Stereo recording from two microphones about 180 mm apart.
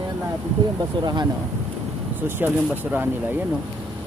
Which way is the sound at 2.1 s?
10° right (ahead or behind).